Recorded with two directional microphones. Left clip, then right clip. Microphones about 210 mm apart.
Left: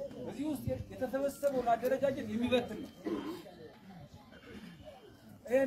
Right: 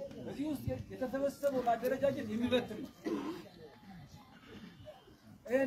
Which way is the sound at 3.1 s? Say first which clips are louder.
Even; 55° right (ahead or behind).